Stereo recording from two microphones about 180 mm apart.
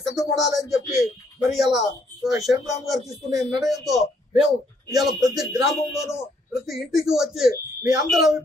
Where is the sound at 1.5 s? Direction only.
Centre (ahead or behind).